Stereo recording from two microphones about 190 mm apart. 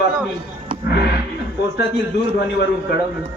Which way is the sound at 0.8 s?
60° left (ahead or behind).